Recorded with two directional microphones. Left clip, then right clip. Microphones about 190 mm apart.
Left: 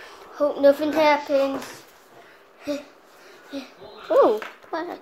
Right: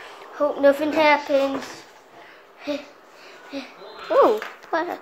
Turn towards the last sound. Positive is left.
turn(degrees=-5)  # may be behind; listen again after turning